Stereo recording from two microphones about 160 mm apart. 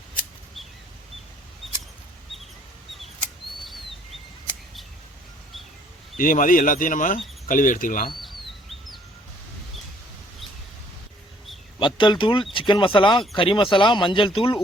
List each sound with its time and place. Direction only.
6.1 s speech: 60° left (ahead or behind)
8.2 s bird: centre (ahead or behind)
11.8 s speech: 30° left (ahead or behind)